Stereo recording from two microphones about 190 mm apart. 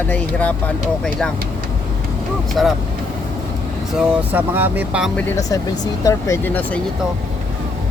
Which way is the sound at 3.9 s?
10° right (ahead or behind).